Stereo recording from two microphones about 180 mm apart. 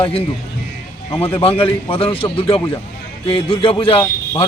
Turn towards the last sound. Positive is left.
turn(degrees=30)  # may be behind; listen again after turning